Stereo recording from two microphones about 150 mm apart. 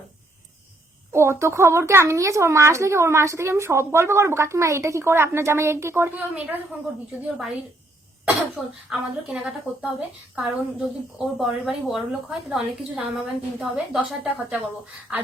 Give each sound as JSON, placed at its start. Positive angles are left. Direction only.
{"t": 1.1, "sound": "speech", "side_deg": -15}
{"t": 8.5, "sound": "a woman's voice", "side_deg": -5}